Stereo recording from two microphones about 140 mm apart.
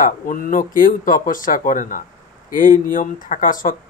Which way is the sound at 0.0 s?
75° left (ahead or behind).